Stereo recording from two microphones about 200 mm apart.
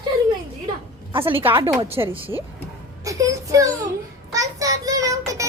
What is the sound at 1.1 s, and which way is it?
Speech, 25° right (ahead or behind).